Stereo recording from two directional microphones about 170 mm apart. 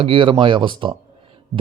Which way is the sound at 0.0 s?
30° right (ahead or behind).